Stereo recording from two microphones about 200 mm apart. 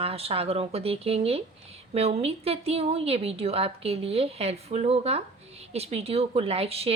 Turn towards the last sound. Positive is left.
turn(degrees=-30)  # may be behind; listen again after turning